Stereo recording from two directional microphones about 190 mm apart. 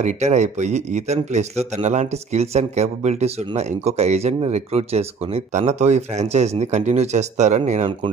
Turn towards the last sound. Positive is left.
turn(degrees=-40)  # may be behind; listen again after turning